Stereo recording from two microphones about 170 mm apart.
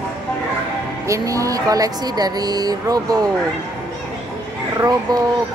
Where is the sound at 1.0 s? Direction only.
20° right (ahead or behind).